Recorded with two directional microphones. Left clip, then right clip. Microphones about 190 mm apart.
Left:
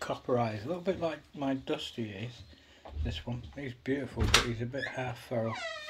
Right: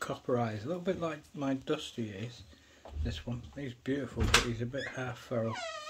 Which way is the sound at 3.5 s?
25° right (ahead or behind).